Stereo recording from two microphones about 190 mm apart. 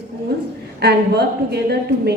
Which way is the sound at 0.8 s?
60° right (ahead or behind).